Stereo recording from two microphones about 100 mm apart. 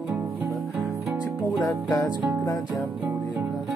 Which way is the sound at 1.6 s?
35° left (ahead or behind).